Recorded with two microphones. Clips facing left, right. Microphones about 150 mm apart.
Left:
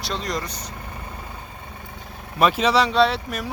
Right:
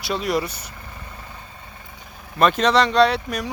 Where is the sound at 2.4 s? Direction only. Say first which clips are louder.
Right 1 dB; 5° left (ahead or behind).